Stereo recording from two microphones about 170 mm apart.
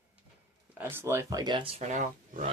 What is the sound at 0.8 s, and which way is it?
Speech, 15° right (ahead or behind).